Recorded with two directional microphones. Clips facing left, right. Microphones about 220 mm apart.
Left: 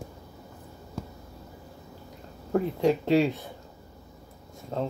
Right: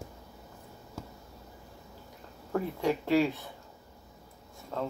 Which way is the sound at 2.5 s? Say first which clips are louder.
Left 6 dB; 25° left (ahead or behind).